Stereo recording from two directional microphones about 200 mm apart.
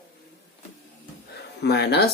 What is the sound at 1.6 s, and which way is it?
Speech, 55° left (ahead or behind).